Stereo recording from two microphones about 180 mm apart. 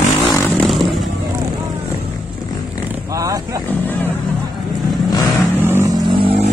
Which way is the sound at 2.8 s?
20° right (ahead or behind).